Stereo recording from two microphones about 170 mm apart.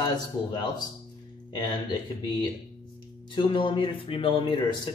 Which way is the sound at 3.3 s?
30° left (ahead or behind).